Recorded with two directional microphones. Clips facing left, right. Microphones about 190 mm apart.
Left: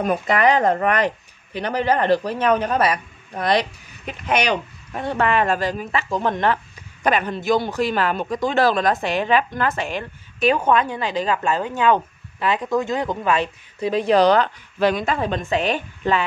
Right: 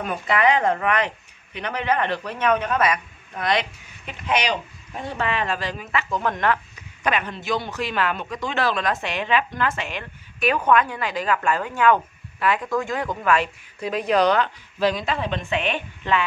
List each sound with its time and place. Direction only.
0.0 s speech: 40° left (ahead or behind)
10.4 s a woman's voice: 25° left (ahead or behind)
14.8 s speech: 55° left (ahead or behind); by 16.2 s 40° left (ahead or behind)